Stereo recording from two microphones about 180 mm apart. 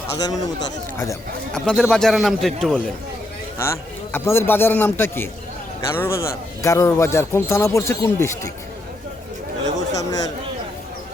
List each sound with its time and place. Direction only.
0.2 s speech: 20° left (ahead or behind)
1.5 s speech: 5° left (ahead or behind)
3.6 s speech: 15° left (ahead or behind)
9.7 s a sound: 20° left (ahead or behind)